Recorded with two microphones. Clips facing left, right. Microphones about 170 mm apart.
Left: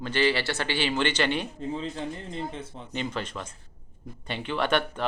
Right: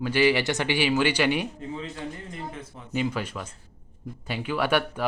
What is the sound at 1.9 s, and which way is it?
Speech, 30° left (ahead or behind).